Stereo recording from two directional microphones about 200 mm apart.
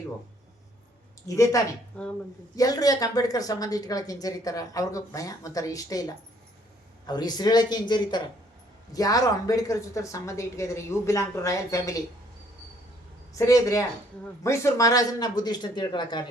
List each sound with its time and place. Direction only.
1.3 s speech: 15° left (ahead or behind)
2.0 s speech: 5° left (ahead or behind)
2.6 s speech: 20° left (ahead or behind)
13.3 s speech: 15° left (ahead or behind)